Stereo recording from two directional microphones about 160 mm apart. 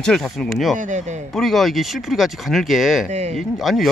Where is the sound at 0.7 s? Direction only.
50° right (ahead or behind).